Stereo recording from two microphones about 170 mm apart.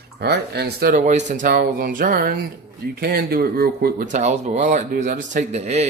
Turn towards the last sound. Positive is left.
turn(degrees=-40)  # may be behind; listen again after turning